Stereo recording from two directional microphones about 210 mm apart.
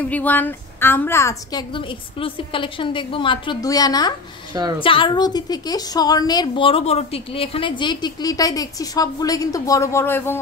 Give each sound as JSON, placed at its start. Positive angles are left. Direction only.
{"t": 0.1, "sound": "a woman's voice", "side_deg": 10}